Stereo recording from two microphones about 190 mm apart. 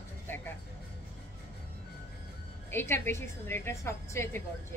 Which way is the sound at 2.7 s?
10° left (ahead or behind).